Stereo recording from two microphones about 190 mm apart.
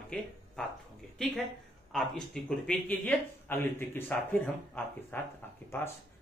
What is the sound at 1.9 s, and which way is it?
A man's voice, 5° left (ahead or behind).